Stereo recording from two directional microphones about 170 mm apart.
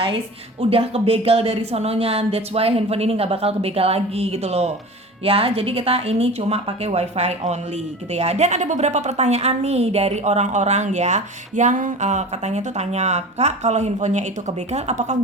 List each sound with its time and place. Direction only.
0.7 s a woman's voice: 35° right (ahead or behind)